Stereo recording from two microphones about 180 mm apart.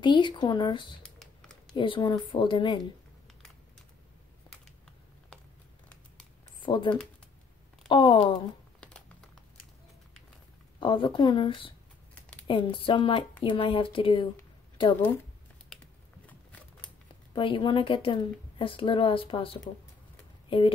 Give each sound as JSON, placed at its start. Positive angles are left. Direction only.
{"t": 0.0, "sound": "speech", "side_deg": 25}
{"t": 1.0, "sound": "typing", "side_deg": 5}
{"t": 1.7, "sound": "speech", "side_deg": 25}
{"t": 6.6, "sound": "speech", "side_deg": 25}
{"t": 10.8, "sound": "speech", "side_deg": 30}
{"t": 15.7, "sound": "typing", "side_deg": 5}
{"t": 16.8, "sound": "speech", "side_deg": 30}